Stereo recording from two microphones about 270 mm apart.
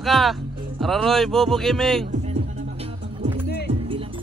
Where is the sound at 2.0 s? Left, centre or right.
Right.